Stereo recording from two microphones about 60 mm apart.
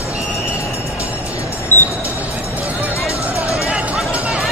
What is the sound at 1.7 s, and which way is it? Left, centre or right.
Vehicle, left.